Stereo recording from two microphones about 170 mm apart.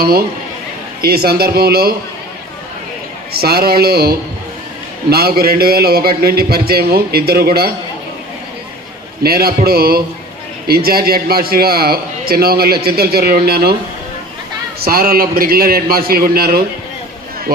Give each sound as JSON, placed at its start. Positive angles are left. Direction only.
{"t": 0.0, "sound": "a man's voice", "side_deg": -65}
{"t": 3.3, "sound": "a man's voice", "side_deg": -65}
{"t": 9.2, "sound": "a man's voice", "side_deg": -65}
{"t": 14.8, "sound": "a man's voice", "side_deg": -60}